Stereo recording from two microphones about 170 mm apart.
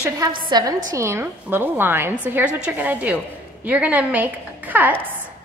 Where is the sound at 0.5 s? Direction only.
25° right (ahead or behind).